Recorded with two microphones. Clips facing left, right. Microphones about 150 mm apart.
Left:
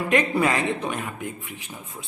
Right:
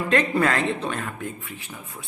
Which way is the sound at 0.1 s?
15° left (ahead or behind).